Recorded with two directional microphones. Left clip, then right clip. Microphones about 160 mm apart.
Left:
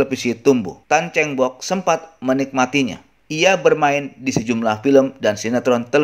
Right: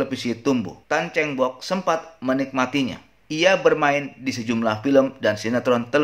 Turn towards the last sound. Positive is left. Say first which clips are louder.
# left 3 dB
turn(degrees=30)  # may be behind; listen again after turning